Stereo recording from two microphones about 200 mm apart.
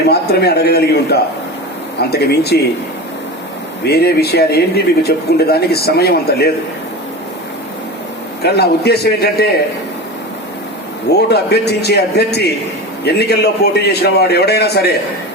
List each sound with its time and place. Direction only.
0.1 s a man's voice: 55° left (ahead or behind)
3.8 s a man's voice: 55° left (ahead or behind)
8.4 s a man's voice: 55° left (ahead or behind)
11.1 s a man's voice: 55° left (ahead or behind)